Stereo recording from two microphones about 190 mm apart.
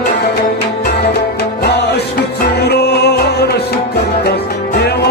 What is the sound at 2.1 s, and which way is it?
Music, 60° left (ahead or behind).